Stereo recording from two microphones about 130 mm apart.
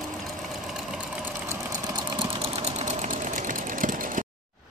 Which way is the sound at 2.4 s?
55° right (ahead or behind).